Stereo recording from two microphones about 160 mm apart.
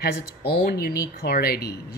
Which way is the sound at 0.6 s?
75° left (ahead or behind).